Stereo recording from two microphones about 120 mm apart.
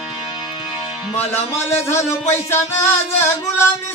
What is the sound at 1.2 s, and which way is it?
Speech, 60° left (ahead or behind).